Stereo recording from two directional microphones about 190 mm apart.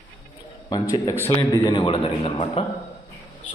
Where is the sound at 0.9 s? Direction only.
20° left (ahead or behind).